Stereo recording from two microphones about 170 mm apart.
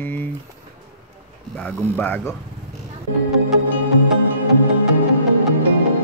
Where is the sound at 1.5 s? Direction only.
10° left (ahead or behind).